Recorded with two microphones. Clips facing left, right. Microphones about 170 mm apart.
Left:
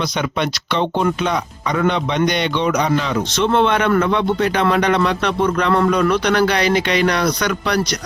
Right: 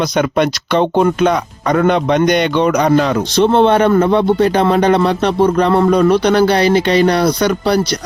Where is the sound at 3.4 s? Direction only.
35° right (ahead or behind).